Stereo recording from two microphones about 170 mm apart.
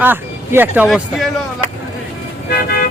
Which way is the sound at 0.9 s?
Centre (ahead or behind).